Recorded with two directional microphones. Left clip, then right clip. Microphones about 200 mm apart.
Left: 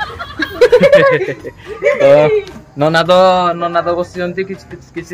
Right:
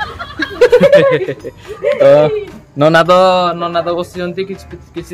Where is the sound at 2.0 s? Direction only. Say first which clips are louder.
Even; 10° right (ahead or behind).